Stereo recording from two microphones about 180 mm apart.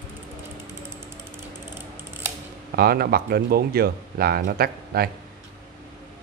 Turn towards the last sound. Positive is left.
turn(degrees=-55)  # may be behind; listen again after turning